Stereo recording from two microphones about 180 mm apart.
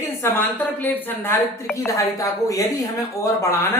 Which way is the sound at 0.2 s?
10° left (ahead or behind).